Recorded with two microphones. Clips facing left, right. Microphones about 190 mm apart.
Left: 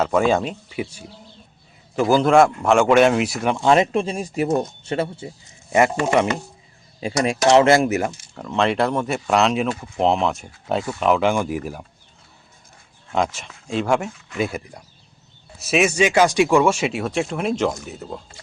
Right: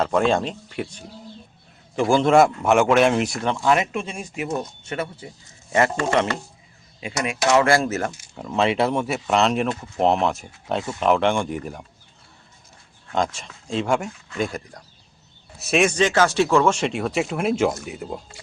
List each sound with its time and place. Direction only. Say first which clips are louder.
0.0 s speech: left 2 dB; 5° left (ahead or behind)
3.6 s speech: left 5 dB; 30° left (ahead or behind)
5.7 s speech: left 3 dB; 10° left (ahead or behind)
7.0 s speech: left 5 dB; 35° left (ahead or behind); by 8.1 s 15° left (ahead or behind)
8.4 s speech: left 1 dB; 5° right (ahead or behind)
13.1 s speech: left 2 dB; 5° left (ahead or behind)